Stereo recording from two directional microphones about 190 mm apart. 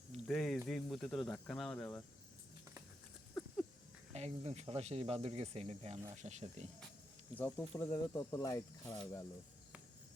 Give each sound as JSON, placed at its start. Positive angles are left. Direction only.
{"t": 0.3, "sound": "speech", "side_deg": 5}
{"t": 3.4, "sound": "a sound", "side_deg": 0}
{"t": 4.1, "sound": "speech", "side_deg": -35}
{"t": 7.3, "sound": "speech", "side_deg": 10}